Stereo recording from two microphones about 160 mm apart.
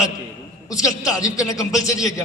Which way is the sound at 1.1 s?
20° left (ahead or behind).